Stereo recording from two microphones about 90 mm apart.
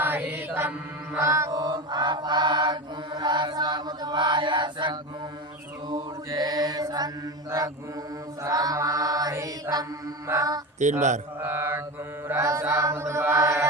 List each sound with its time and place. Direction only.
0.0 s mantra: 20° right (ahead or behind)
1.2 s chant: 35° right (ahead or behind)
1.5 s mantra: 45° right (ahead or behind)
5.9 s mantra: 45° right (ahead or behind)
8.4 s chant: 45° right (ahead or behind)
10.9 s mantra: 25° right (ahead or behind)
12.3 s chant: 35° right (ahead or behind)